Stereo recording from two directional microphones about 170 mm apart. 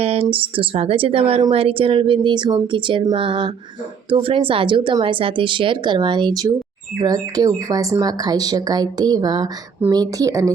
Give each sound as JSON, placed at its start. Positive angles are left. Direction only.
{"t": 0.0, "sound": "speech", "side_deg": -35}